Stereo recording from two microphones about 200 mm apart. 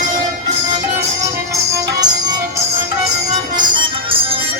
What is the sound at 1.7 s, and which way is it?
Music, 20° right (ahead or behind).